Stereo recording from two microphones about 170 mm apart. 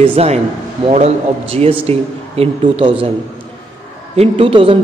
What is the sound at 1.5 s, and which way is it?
A man's voice, 35° right (ahead or behind).